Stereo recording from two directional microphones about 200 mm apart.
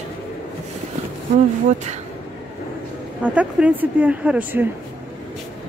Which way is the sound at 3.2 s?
5° right (ahead or behind).